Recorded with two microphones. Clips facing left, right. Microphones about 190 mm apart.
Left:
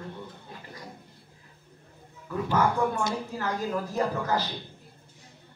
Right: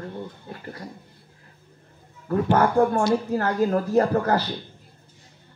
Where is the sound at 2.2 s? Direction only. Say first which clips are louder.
Right 6 dB; 55° right (ahead or behind).